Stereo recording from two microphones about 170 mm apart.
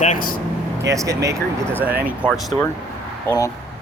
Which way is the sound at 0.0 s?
55° left (ahead or behind).